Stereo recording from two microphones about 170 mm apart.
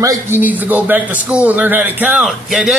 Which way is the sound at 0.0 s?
15° right (ahead or behind).